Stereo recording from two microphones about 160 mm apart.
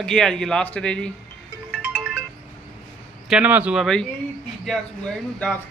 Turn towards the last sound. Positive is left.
turn(degrees=5)  # may be behind; listen again after turning